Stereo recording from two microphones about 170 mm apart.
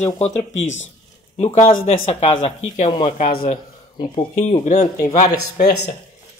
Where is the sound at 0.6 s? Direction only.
90° left.